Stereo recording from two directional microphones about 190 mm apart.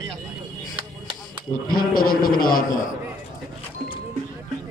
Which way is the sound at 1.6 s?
50° left (ahead or behind).